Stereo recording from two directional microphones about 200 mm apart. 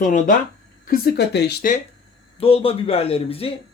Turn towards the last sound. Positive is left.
turn(degrees=30)  # may be behind; listen again after turning